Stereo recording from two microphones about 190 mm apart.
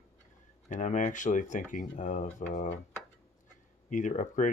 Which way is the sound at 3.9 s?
40° left (ahead or behind).